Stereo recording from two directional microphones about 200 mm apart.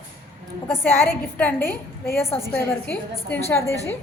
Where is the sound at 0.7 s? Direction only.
10° left (ahead or behind).